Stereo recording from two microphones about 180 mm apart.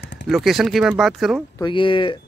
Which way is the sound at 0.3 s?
Centre (ahead or behind).